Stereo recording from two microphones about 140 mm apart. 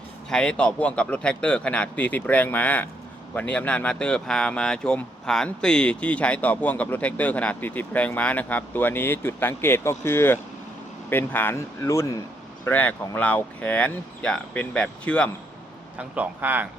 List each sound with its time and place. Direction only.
0.3 s speech: 5° left (ahead or behind)
16.0 s a man's voice: 10° right (ahead or behind)